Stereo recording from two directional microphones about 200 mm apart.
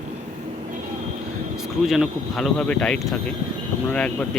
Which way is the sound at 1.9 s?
Centre (ahead or behind).